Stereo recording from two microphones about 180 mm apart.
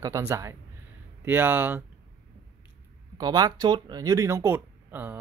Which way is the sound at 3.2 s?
20° right (ahead or behind).